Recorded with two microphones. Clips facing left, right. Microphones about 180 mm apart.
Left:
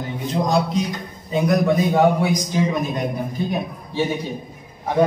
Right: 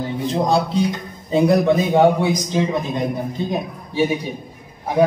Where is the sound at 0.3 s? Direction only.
30° right (ahead or behind).